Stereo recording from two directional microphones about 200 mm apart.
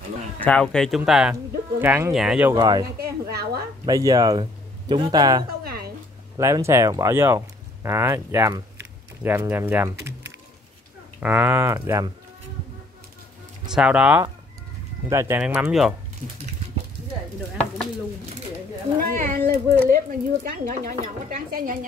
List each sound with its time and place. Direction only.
0.4 s speech: 5° left (ahead or behind)
1.3 s speech: 10° right (ahead or behind)
2.5 s speech: 20° right (ahead or behind)
3.0 s a sound: 50° right (ahead or behind)
3.8 s speech: 20° right (ahead or behind)
5.6 s a sound: 50° right (ahead or behind)
6.3 s speech: 15° right (ahead or behind)
11.1 s speech: 10° right (ahead or behind)
13.7 s speech: 5° right (ahead or behind)
18.9 s a sound: 45° right (ahead or behind)
20.4 s speech: 45° right (ahead or behind)